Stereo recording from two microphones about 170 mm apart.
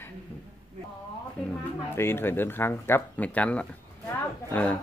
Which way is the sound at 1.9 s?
15° left (ahead or behind).